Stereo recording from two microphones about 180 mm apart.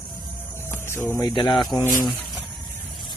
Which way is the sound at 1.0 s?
20° left (ahead or behind).